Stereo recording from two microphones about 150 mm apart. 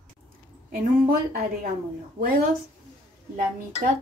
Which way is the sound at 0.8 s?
75° right (ahead or behind).